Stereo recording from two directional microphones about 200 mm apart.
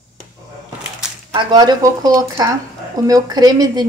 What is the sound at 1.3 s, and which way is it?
Speech, 20° right (ahead or behind).